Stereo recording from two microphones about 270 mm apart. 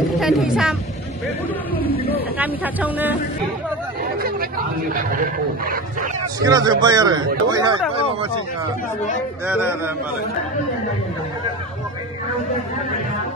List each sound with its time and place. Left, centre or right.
0.2 s speech: centre
2.3 s a man's voice: centre
4.0 s chatter: right
4.9 s speech: right
6.4 s a man's voice: centre
9.5 s a man's voice: centre